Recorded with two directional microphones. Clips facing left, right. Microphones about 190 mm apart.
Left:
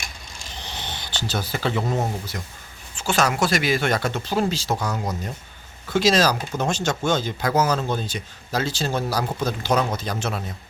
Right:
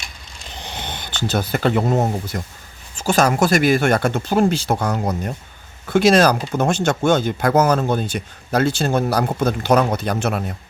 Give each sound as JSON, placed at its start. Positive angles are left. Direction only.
{"t": 0.6, "sound": "speech", "side_deg": -55}